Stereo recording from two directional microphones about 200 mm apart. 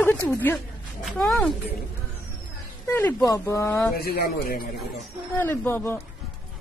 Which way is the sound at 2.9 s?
10° left (ahead or behind).